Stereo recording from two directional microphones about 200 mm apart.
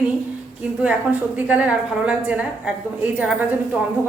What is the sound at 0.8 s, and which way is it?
A woman's voice, 5° right (ahead or behind).